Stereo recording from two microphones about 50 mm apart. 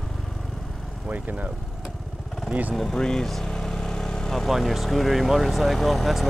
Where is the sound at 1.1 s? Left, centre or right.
Right.